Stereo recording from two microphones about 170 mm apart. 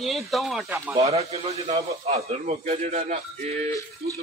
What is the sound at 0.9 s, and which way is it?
A man's voice, 40° right (ahead or behind).